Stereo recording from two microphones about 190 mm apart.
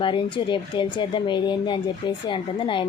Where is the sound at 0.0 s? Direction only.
25° left (ahead or behind).